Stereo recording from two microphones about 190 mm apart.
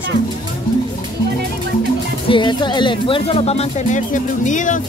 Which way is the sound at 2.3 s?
25° left (ahead or behind).